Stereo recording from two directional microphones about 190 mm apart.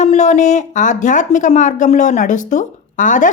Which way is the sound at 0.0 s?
35° left (ahead or behind).